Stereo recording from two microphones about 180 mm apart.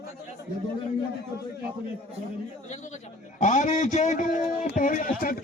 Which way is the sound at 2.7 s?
40° left (ahead or behind).